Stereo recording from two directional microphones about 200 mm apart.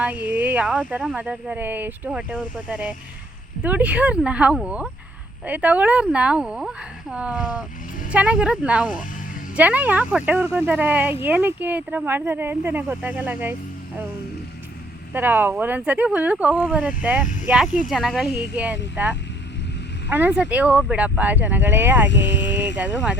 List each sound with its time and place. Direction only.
0.0 s speech: 10° right (ahead or behind)
15.1 s speech: 10° right (ahead or behind)
22.1 s speech: 60° left (ahead or behind)